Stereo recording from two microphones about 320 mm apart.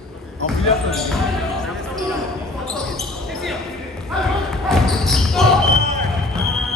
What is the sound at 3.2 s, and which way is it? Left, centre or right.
Basketball bounce, centre.